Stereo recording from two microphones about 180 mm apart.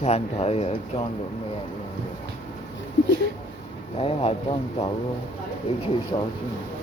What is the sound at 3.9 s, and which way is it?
Speech, 30° left (ahead or behind).